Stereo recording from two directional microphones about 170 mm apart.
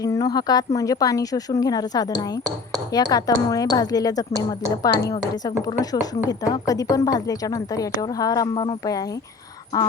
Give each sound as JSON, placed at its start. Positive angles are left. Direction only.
{"t": 0.0, "sound": "a woman's voice", "side_deg": 20}
{"t": 4.3, "sound": "a woman's voice", "side_deg": -20}
{"t": 4.9, "sound": "a woman's voice", "side_deg": 20}